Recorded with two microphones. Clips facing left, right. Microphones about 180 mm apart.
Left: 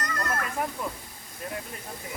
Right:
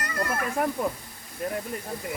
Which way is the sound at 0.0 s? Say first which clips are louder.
Right 2 dB; 10° right (ahead or behind).